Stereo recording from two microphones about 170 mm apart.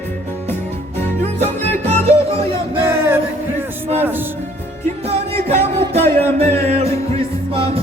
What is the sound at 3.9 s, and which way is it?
Music, 10° right (ahead or behind).